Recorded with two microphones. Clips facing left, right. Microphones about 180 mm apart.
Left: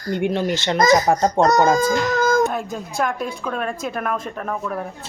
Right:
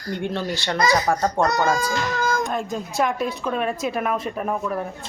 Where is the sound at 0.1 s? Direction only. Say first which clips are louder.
Left 5 dB; 15° left (ahead or behind).